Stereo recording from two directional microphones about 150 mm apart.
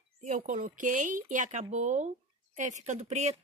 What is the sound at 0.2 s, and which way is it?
Speech, 55° right (ahead or behind).